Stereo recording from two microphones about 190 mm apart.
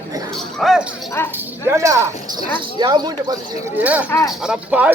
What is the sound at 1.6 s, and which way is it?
Speech, 15° right (ahead or behind).